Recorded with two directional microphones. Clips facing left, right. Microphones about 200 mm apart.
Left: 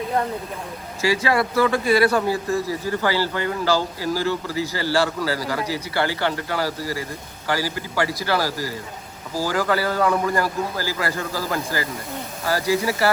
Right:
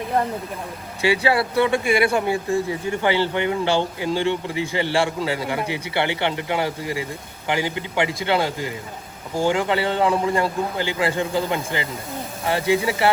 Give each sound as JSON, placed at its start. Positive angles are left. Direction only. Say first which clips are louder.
{"t": 1.2, "sound": "a man's voice", "louder": "left 1 dB", "side_deg": -30}